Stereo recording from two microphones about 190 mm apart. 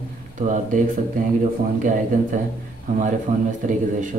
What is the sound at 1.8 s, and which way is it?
A man's voice, 45° right (ahead or behind).